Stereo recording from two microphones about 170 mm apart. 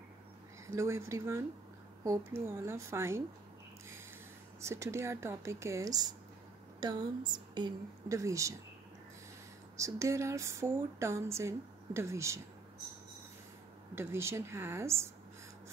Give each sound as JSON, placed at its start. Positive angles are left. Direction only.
{"t": 0.7, "sound": "speech", "side_deg": -15}
{"t": 4.6, "sound": "a woman's voice", "side_deg": -15}
{"t": 9.8, "sound": "speech", "side_deg": -20}
{"t": 13.9, "sound": "speech", "side_deg": -15}